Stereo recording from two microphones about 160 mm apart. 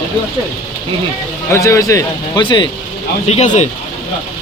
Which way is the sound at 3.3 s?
45° left (ahead or behind).